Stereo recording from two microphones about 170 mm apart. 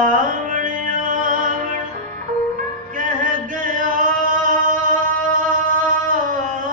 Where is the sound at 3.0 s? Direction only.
50° right (ahead or behind).